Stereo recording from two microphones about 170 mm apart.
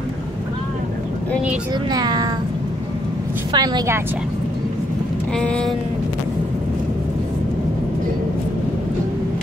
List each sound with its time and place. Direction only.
1.9 s a woman's voice: 25° right (ahead or behind)
3.5 s a woman's voice: 25° right (ahead or behind)
5.3 s speech: 5° left (ahead or behind)